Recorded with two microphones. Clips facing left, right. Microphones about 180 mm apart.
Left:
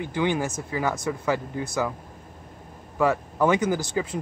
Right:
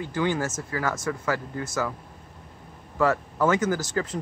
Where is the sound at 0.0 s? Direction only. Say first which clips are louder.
Left 1 dB; 20° left (ahead or behind).